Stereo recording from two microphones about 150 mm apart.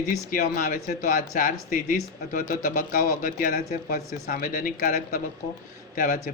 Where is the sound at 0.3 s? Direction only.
65° left (ahead or behind).